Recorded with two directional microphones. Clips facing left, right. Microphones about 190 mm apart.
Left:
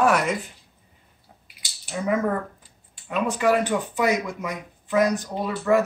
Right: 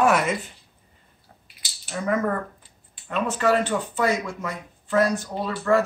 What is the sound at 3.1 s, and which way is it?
Speech, 10° left (ahead or behind).